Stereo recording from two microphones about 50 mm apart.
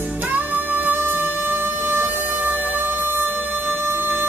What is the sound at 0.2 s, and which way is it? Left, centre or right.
Music, right.